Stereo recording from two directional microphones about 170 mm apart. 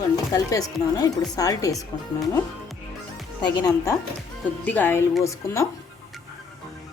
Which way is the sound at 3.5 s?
20° left (ahead or behind).